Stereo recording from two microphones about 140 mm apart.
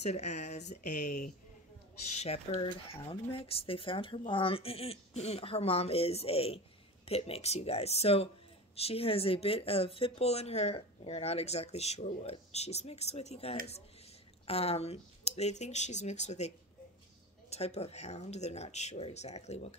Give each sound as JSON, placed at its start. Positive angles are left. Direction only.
{"t": 0.0, "sound": "speech", "side_deg": 55}
{"t": 2.1, "sound": "speech", "side_deg": 50}